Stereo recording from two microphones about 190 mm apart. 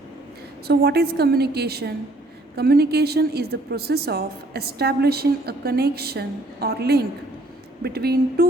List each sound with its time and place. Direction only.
0.7 s a woman's voice: 60° right (ahead or behind)